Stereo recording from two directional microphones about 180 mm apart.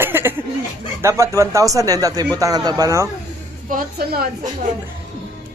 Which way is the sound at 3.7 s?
55° right (ahead or behind).